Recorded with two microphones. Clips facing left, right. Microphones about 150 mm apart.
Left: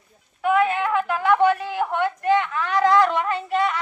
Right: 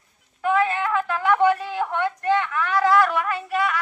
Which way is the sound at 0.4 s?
15° left (ahead or behind).